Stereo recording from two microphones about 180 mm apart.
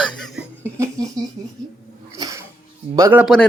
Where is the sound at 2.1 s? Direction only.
20° right (ahead or behind).